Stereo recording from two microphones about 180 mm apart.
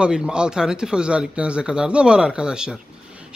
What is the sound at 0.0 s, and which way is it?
Speech, 5° right (ahead or behind).